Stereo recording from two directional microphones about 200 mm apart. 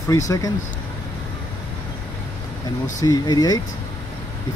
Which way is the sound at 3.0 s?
20° left (ahead or behind).